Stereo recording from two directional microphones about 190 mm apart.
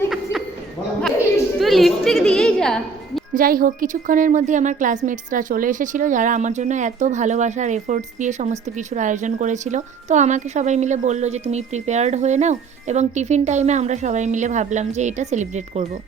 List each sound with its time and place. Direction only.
1.5 s a woman's voice: centre (ahead or behind)
3.3 s a woman's voice: 50° right (ahead or behind)